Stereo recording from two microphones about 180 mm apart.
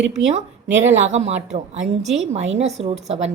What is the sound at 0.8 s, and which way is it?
A woman's voice, 40° right (ahead or behind).